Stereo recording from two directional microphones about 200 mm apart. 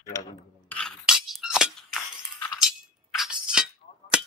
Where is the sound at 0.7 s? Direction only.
Centre (ahead or behind).